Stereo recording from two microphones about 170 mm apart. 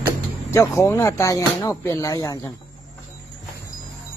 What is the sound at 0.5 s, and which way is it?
Speech, 15° left (ahead or behind).